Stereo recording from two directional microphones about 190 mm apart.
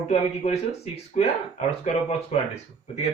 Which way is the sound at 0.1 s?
35° left (ahead or behind).